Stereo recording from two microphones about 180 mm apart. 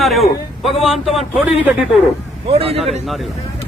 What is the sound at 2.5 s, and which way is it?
Speech, 35° right (ahead or behind).